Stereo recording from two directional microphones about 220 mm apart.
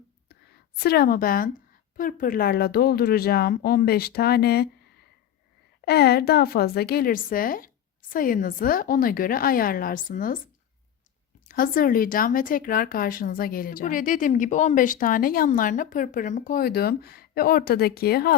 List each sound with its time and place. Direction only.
0.8 s speech: 45° left (ahead or behind)
5.8 s speech: 45° left (ahead or behind)
11.4 s speech: 40° left (ahead or behind)